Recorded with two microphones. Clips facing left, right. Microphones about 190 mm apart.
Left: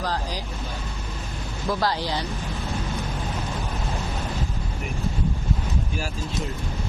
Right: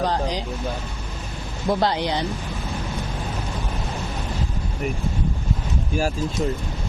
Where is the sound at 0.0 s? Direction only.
20° right (ahead or behind).